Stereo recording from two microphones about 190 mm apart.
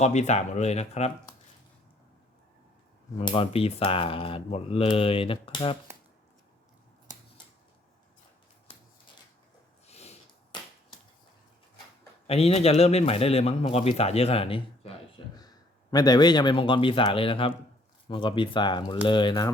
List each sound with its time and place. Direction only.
0.0 s a man's voice: 35° left (ahead or behind)
3.2 s speech: 30° left (ahead or behind)
9.8 s snort: 35° left (ahead or behind)
12.3 s a man's voice: 30° left (ahead or behind)